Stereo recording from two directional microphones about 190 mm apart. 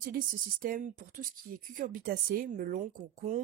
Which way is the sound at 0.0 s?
50° right (ahead or behind).